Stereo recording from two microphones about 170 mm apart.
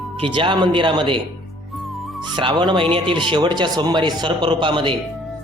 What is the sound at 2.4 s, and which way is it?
A man's voice, 30° right (ahead or behind).